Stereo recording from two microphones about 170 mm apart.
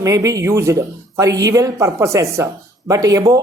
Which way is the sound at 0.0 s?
20° right (ahead or behind).